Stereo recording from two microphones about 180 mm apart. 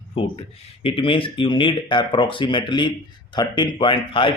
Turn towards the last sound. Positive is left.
turn(degrees=30)  # may be behind; listen again after turning